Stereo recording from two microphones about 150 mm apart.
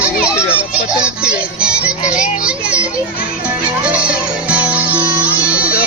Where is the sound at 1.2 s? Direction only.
5° right (ahead or behind).